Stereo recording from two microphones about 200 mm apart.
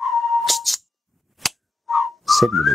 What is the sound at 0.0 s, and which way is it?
Music, centre (ahead or behind).